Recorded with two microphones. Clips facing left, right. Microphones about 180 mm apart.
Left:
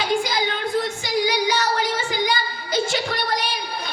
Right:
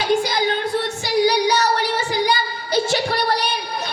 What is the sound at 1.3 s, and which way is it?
Child singing, 40° right (ahead or behind).